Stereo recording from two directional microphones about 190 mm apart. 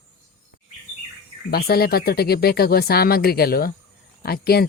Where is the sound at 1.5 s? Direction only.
55° left (ahead or behind).